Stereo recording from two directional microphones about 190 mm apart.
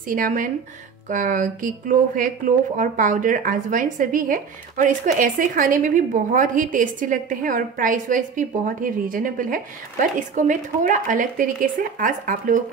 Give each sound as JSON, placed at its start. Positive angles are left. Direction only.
{"t": 0.1, "sound": "speech", "side_deg": -45}